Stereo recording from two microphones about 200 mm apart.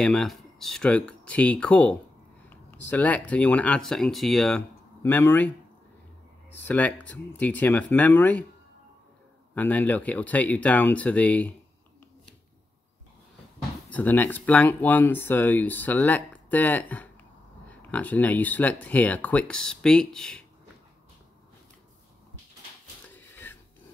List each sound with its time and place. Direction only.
0.0 s speech: 5° left (ahead or behind)
6.6 s speech: 10° left (ahead or behind)
9.6 s speech: 10° left (ahead or behind)
13.8 s speech: 10° left (ahead or behind)
23.0 s a sound: 10° left (ahead or behind)